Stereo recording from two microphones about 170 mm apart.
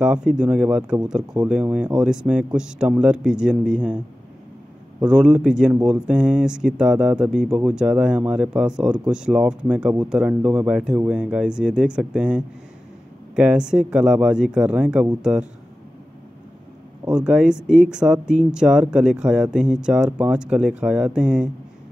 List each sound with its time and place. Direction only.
0.0 s speech: 5° right (ahead or behind)
5.0 s speech: 5° right (ahead or behind)
17.0 s speech: 5° right (ahead or behind)